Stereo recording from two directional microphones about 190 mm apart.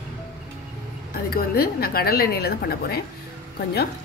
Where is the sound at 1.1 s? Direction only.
55° left (ahead or behind).